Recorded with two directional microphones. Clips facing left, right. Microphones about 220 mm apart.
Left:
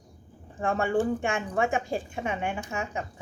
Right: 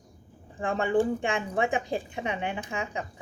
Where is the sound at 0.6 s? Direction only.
15° right (ahead or behind).